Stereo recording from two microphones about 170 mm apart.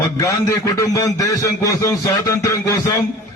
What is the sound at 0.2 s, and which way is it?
Speech, 20° left (ahead or behind).